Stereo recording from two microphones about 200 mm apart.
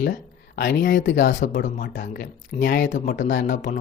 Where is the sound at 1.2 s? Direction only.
45° left (ahead or behind).